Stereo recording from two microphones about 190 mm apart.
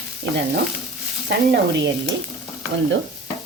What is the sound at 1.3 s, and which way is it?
Speech, 60° right (ahead or behind).